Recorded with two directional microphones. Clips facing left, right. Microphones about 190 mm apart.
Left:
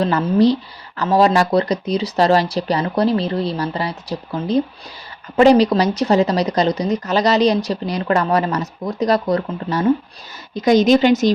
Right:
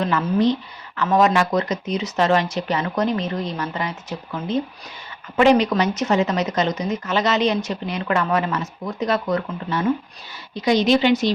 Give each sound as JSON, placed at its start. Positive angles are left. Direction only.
{"t": 0.0, "sound": "a woman's voice", "side_deg": 35}